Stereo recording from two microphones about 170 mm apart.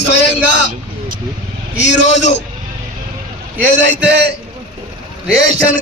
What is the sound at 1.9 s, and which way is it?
Music, 45° left (ahead or behind).